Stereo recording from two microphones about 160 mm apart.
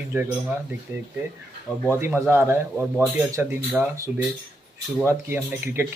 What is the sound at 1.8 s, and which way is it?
A man's voice, 15° right (ahead or behind).